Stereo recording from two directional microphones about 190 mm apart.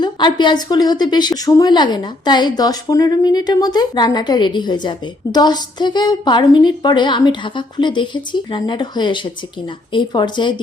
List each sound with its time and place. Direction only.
0.0 s a woman's voice: 25° left (ahead or behind)